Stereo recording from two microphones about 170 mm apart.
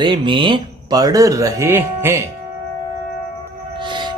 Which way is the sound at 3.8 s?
25° right (ahead or behind).